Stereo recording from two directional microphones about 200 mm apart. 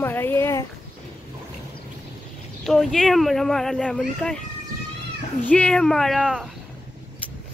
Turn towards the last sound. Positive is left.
turn(degrees=0)  # may be behind; listen again after turning